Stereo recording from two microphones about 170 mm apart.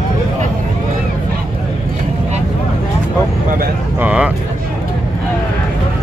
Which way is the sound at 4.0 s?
10° right (ahead or behind).